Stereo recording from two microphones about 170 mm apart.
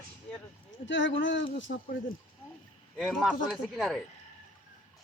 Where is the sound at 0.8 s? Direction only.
90° left.